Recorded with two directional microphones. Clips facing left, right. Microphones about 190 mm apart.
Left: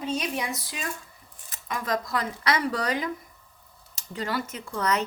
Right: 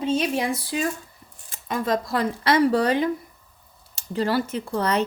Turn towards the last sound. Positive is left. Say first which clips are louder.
# right 4 dB
turn(degrees=-30)  # may be behind; listen again after turning